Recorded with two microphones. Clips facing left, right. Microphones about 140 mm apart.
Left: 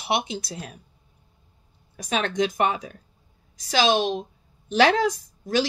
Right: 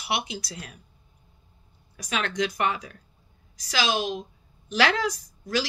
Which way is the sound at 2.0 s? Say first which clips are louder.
Left 4 dB; 25° left (ahead or behind).